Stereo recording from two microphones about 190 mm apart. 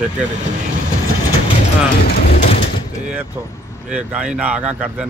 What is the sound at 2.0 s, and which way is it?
Mechanisms, 50° left (ahead or behind).